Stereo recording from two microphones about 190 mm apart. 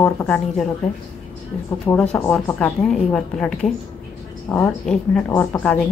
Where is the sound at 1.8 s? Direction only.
5° left (ahead or behind).